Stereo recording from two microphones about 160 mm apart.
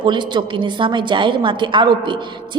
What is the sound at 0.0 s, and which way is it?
A woman's voice, 30° right (ahead or behind).